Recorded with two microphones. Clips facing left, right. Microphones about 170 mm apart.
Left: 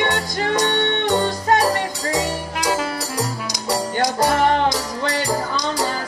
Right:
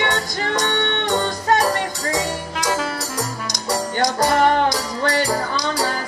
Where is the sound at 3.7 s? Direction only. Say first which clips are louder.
Even; 30° left (ahead or behind).